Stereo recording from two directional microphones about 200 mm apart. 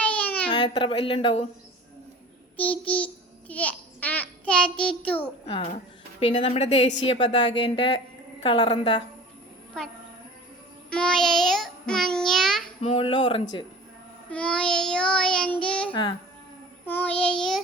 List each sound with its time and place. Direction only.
0.0 s a sound: 5° left (ahead or behind)
0.4 s a woman's voice: 20° left (ahead or behind)
2.6 s a child's voice: 5° left (ahead or behind)
5.5 s a woman's voice: 30° left (ahead or behind)
10.8 s child singing: 5° left (ahead or behind)
12.8 s a woman's voice: 25° left (ahead or behind)
14.3 s child singing: 5° left (ahead or behind)
16.8 s a child's voice: 10° left (ahead or behind)
17.2 s child singing: 5° left (ahead or behind)